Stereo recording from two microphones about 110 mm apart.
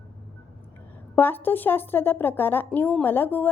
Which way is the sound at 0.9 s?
20° left (ahead or behind).